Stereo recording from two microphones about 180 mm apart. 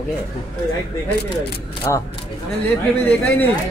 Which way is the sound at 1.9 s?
15° left (ahead or behind).